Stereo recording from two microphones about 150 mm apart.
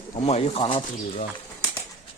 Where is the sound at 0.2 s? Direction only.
45° left (ahead or behind).